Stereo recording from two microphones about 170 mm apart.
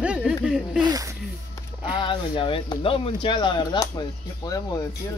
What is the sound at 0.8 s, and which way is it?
Speech, 25° right (ahead or behind).